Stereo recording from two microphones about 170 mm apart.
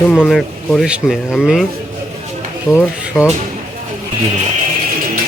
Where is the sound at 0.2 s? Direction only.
Centre (ahead or behind).